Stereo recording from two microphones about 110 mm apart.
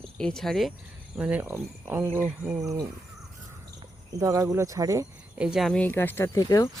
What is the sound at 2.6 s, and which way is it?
Speech, 30° right (ahead or behind).